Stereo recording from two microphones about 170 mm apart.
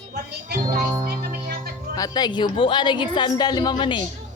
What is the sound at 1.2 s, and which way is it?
Music, 60° right (ahead or behind).